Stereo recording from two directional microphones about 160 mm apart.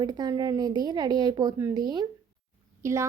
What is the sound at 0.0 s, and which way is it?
Speech, 25° right (ahead or behind).